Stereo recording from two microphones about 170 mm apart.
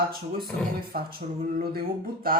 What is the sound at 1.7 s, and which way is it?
Speech, 60° right (ahead or behind).